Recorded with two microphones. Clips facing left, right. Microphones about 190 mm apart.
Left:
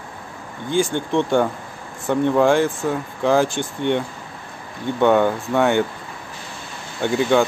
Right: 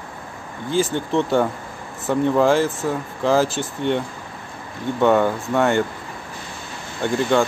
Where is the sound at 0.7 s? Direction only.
5° right (ahead or behind).